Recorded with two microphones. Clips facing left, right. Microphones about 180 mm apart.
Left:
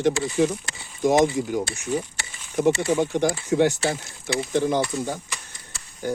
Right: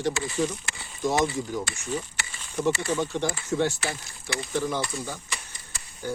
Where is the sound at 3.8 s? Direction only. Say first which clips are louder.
Left 7 dB; 25° left (ahead or behind).